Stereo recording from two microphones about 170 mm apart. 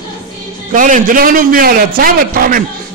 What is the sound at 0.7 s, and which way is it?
A man's voice, 50° right (ahead or behind).